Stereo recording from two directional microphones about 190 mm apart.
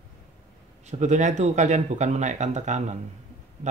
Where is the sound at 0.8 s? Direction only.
40° right (ahead or behind).